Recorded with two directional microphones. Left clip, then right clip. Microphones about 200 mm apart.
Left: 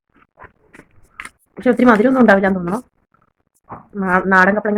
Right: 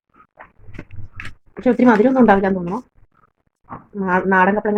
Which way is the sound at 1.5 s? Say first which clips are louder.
Left 2 dB; 15° left (ahead or behind).